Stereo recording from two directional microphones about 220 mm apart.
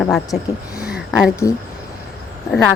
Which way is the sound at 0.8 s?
Centre (ahead or behind).